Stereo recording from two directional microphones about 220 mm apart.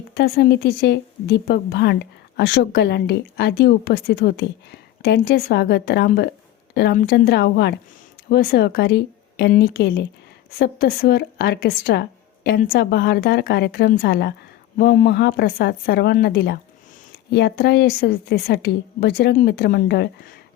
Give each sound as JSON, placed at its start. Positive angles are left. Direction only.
{"t": 0.1, "sound": "a woman's voice", "side_deg": 45}